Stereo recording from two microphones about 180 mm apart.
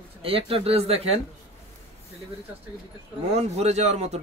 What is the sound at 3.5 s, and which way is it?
Speech, 35° right (ahead or behind).